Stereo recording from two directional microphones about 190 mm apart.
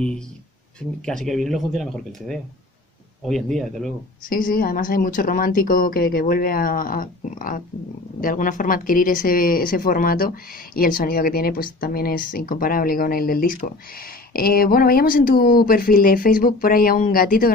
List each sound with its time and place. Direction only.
0.7 s speech: 5° left (ahead or behind)
4.3 s speech: 45° left (ahead or behind)